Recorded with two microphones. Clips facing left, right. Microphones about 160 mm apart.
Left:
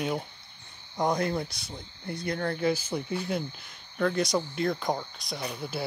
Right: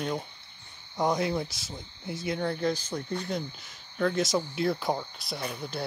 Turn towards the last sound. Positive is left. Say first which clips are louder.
# left 1 dB
turn(degrees=0)  # may be behind; listen again after turning